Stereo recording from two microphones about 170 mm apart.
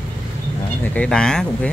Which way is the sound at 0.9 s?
5° left (ahead or behind).